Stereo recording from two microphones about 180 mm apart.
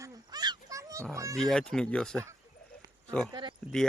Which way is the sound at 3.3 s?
25° right (ahead or behind).